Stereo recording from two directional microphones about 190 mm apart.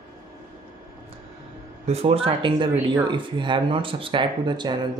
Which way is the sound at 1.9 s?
30° right (ahead or behind).